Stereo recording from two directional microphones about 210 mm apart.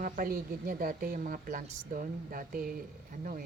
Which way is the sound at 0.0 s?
45° right (ahead or behind).